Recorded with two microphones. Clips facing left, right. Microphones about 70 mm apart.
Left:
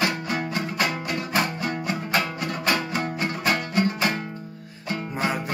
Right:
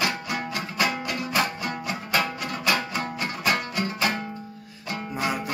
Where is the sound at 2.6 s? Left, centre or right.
Left.